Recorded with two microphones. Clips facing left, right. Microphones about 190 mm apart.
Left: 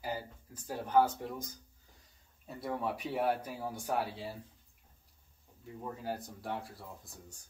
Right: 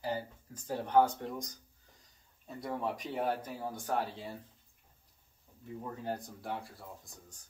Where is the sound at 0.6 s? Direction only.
5° left (ahead or behind).